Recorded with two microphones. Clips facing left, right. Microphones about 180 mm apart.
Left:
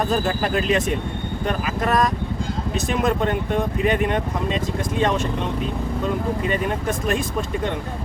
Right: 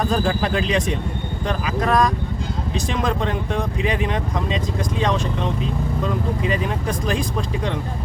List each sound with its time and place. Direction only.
0.0 s speech: 5° left (ahead or behind)
6.5 s speech: centre (ahead or behind)